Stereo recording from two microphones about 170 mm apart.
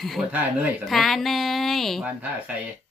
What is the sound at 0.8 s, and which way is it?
Speech, centre (ahead or behind).